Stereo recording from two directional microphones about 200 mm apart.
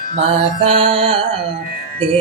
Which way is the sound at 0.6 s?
30° right (ahead or behind).